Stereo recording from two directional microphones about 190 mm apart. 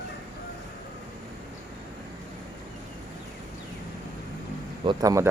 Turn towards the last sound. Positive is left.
turn(degrees=-15)  # may be behind; listen again after turning